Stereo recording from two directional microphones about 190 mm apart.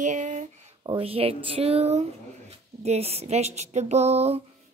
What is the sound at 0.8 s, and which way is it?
A woman's voice, 30° right (ahead or behind).